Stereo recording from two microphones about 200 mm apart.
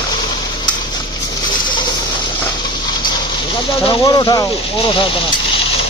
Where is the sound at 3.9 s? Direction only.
20° left (ahead or behind).